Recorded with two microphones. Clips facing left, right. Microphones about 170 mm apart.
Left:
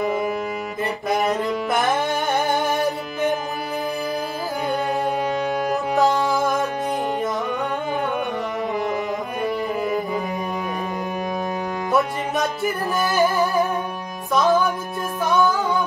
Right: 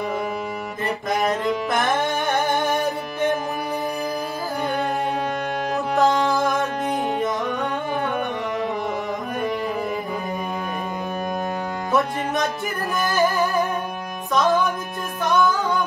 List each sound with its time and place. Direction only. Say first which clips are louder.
5.9 s music: right 1 dB; centre (ahead or behind)
11.9 s music: even; centre (ahead or behind)